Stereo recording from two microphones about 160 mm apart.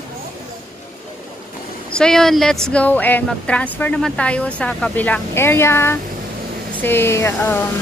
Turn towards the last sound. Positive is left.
turn(degrees=15)  # may be behind; listen again after turning